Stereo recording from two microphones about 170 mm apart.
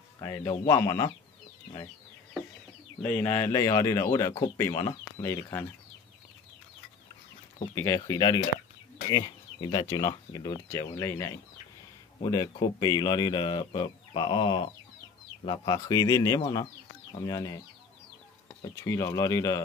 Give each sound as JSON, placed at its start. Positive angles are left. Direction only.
{"t": 0.2, "sound": "a man's voice", "side_deg": 15}
{"t": 3.0, "sound": "speech", "side_deg": 10}
{"t": 7.7, "sound": "speech", "side_deg": 20}
{"t": 18.6, "sound": "speech", "side_deg": 20}